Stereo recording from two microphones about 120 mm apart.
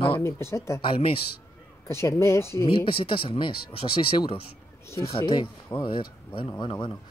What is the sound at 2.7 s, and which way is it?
Speech, 50° left (ahead or behind).